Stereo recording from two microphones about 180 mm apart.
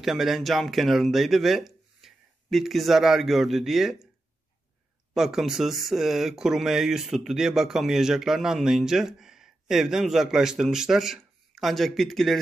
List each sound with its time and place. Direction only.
0.0 s speech: centre (ahead or behind)
5.1 s speech: centre (ahead or behind)